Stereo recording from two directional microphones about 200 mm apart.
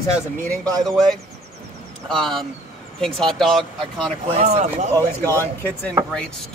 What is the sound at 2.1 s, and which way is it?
Speech, centre (ahead or behind).